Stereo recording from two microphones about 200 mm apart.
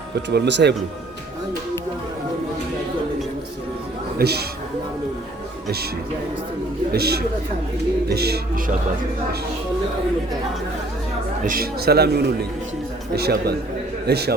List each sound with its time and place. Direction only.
0.3 s speech: 60° right (ahead or behind)
4.2 s a man's voice: 55° right (ahead or behind)
6.9 s a man's voice: 50° right (ahead or behind)
11.4 s a man's voice: 50° right (ahead or behind)